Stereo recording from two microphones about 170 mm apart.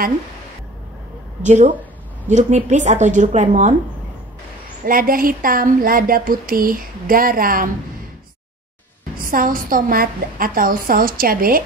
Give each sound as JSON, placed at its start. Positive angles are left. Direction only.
{"t": 1.4, "sound": "a woman's voice", "side_deg": -45}
{"t": 4.8, "sound": "speech", "side_deg": -55}
{"t": 9.2, "sound": "speech", "side_deg": -55}